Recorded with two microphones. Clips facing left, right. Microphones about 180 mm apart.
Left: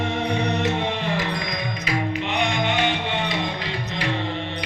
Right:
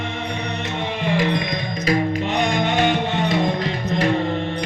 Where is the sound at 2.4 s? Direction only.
45° right (ahead or behind).